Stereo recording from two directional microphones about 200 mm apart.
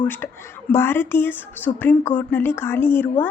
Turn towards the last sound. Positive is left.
turn(degrees=10)  # may be behind; listen again after turning